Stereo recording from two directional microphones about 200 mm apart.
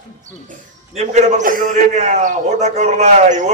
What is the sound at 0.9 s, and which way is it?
A man's voice, 35° right (ahead or behind).